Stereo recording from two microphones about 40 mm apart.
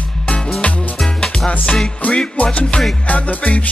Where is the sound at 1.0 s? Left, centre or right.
Centre.